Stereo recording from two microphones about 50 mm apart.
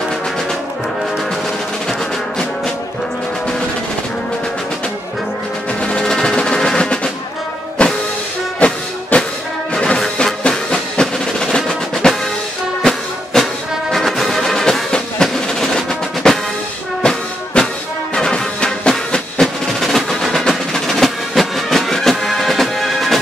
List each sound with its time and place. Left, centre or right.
1.9 s music: centre
5.8 s music: centre
11.4 s percussion: centre
13.4 s music: centre
15.2 s percussion: centre
17.0 s music: centre
19.4 s percussion: centre